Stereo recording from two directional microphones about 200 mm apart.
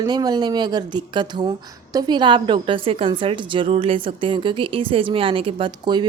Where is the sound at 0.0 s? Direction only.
20° right (ahead or behind).